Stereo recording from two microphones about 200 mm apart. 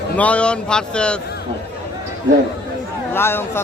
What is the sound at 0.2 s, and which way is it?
A man's voice, 5° left (ahead or behind).